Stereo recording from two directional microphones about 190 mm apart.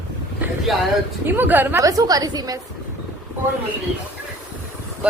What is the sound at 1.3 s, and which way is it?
A woman's voice, 10° right (ahead or behind).